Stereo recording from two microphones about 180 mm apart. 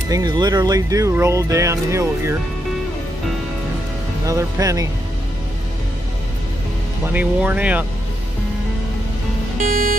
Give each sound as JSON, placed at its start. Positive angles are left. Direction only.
{"t": 0.1, "sound": "speech", "side_deg": -20}
{"t": 4.3, "sound": "speech", "side_deg": -20}
{"t": 7.1, "sound": "speech", "side_deg": -10}
{"t": 9.6, "sound": "music", "side_deg": -50}